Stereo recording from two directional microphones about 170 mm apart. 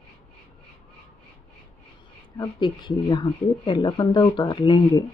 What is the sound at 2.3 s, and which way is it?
Speech, 25° left (ahead or behind).